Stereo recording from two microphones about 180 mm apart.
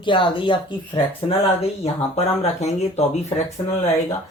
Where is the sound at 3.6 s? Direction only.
25° left (ahead or behind).